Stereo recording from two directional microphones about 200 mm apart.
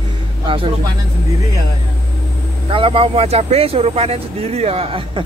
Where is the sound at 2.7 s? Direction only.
25° right (ahead or behind).